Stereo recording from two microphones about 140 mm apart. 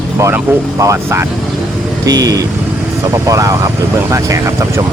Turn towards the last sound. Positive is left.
turn(degrees=-20)  # may be behind; listen again after turning